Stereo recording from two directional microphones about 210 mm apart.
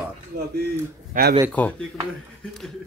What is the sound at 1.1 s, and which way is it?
Speech, 40° right (ahead or behind).